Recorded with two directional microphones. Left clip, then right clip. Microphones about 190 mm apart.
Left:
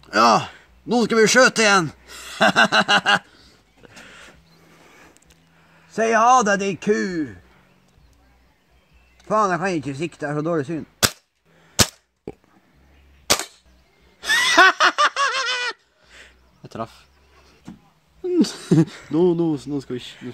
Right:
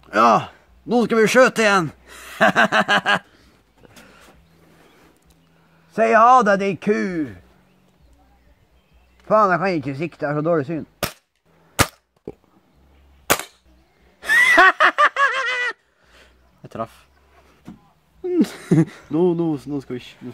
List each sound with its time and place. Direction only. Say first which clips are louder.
0.0 s speech: right 1 dB; 5° right (ahead or behind)
3.4 s a sound: left 2 dB; centre (ahead or behind)
5.9 s speech: right 3 dB; 15° right (ahead or behind)
9.2 s speech: right 4 dB; 15° right (ahead or behind)
14.2 s snicker: right 2 dB; 5° right (ahead or behind)
18.2 s speech: even; 5° right (ahead or behind)